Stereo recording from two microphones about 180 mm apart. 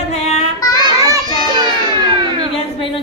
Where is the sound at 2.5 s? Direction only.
30° left (ahead or behind).